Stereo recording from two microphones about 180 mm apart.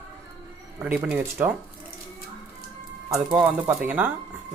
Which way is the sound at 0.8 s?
10° right (ahead or behind).